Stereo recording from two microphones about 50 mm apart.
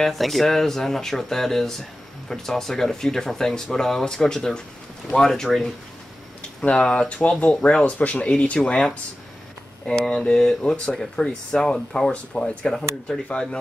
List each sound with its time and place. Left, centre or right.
0.0 s speech: centre
6.6 s speech: left
8.3 s speech: centre
9.8 s speech: centre
12.1 s speech: left